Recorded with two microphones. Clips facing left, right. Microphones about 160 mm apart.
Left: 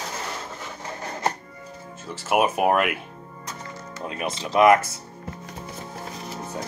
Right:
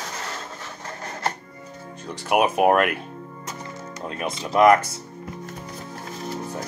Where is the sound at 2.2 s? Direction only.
Centre (ahead or behind).